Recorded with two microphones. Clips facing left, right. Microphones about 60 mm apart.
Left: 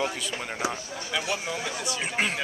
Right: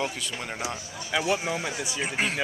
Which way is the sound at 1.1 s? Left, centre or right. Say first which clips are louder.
Right 4 dB; centre.